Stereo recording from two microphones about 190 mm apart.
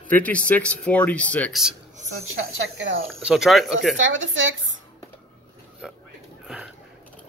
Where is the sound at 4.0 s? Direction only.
85° right.